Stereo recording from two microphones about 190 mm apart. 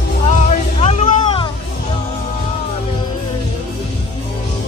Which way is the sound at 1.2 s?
25° left (ahead or behind).